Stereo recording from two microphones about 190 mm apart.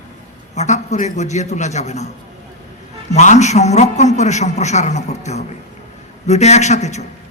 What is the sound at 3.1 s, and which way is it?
A man's voice, 40° left (ahead or behind).